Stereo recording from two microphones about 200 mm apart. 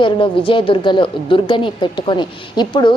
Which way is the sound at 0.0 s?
25° left (ahead or behind).